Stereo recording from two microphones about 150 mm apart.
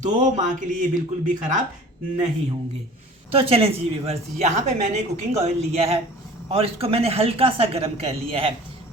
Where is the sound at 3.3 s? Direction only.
40° right (ahead or behind).